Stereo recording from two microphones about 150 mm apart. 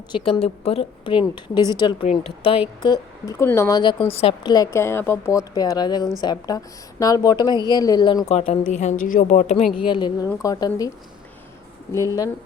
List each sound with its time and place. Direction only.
0.1 s a woman's voice: 40° left (ahead or behind)
2.8 s a woman's voice: 25° left (ahead or behind)
4.5 s a woman's voice: 20° left (ahead or behind)
8.3 s a woman's voice: 45° left (ahead or behind)
9.7 s a woman's voice: 35° left (ahead or behind)